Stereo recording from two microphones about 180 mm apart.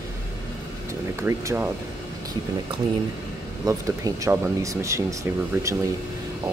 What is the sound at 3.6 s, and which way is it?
Speech, 15° right (ahead or behind).